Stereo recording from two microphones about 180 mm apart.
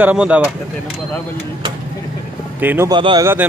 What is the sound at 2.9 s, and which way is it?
Speech, 25° right (ahead or behind).